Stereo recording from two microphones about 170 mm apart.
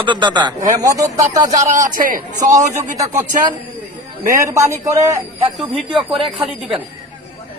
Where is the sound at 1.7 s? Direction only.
45° right (ahead or behind).